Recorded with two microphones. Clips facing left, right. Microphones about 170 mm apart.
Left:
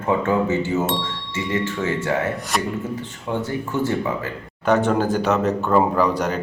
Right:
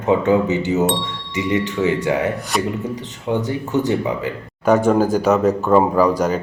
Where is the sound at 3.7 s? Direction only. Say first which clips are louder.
Right 4 dB; 20° right (ahead or behind).